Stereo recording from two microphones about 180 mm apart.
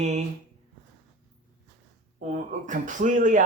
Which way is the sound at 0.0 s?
40° right (ahead or behind).